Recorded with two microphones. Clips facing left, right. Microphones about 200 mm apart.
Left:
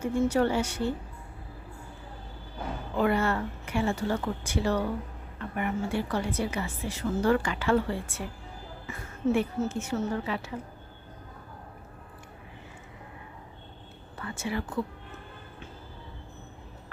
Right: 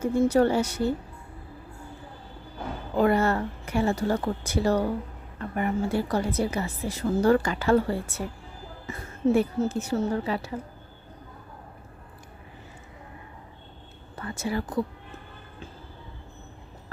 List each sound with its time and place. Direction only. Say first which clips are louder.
0.0 s a woman's voice: right 4 dB; 40° right (ahead or behind)
3.0 s a woman's voice: right 4 dB; 40° right (ahead or behind)
14.2 s a woman's voice: right 3 dB; 40° right (ahead or behind)